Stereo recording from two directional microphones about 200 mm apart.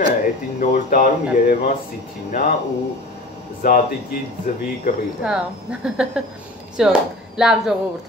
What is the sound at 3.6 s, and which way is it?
Speech, 45° left (ahead or behind).